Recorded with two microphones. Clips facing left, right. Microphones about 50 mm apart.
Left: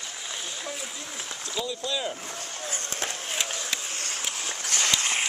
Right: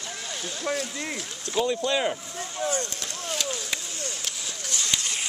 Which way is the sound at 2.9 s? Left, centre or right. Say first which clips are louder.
Left 1 dB; left.